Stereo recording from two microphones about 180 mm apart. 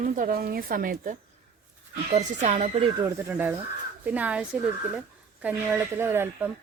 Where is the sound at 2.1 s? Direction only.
40° right (ahead or behind).